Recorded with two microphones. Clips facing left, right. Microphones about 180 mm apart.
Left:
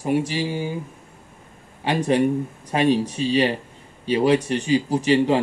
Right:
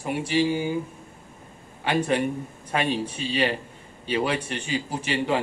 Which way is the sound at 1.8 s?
35° left (ahead or behind).